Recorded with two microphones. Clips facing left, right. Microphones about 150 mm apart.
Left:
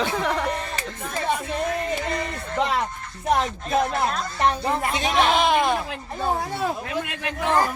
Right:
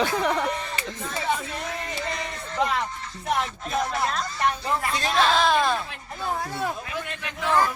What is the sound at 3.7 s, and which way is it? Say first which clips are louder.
A man's voice: left 4 dB; 55° left (ahead or behind).